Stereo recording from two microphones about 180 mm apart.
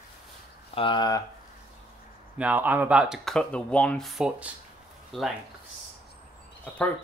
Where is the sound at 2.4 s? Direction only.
10° right (ahead or behind).